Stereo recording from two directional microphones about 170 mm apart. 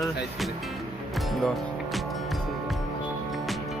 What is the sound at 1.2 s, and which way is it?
Music, centre (ahead or behind).